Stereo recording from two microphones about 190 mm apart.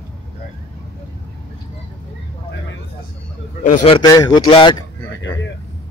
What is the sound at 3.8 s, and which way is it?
Speech, 25° left (ahead or behind).